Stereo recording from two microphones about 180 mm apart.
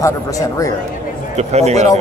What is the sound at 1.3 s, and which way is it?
Speech, 35° right (ahead or behind).